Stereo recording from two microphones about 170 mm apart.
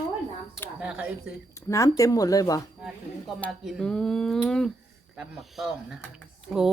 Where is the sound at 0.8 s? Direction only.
5° right (ahead or behind).